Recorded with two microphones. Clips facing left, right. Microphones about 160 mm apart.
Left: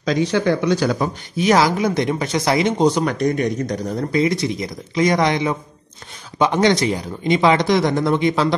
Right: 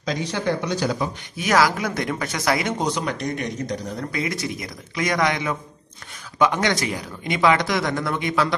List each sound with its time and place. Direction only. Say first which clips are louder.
0.0 s speech: left 7 dB; 90° left
1.4 s speech: left 4 dB; 25° left (ahead or behind)
2.9 s speech: left 7 dB; 45° left (ahead or behind)
4.1 s speech: left 10 dB; 25° left (ahead or behind)